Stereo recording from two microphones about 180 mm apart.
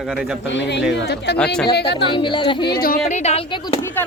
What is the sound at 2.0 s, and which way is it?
Speech, 25° left (ahead or behind).